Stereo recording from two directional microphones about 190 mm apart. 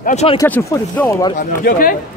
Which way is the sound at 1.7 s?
50° left (ahead or behind).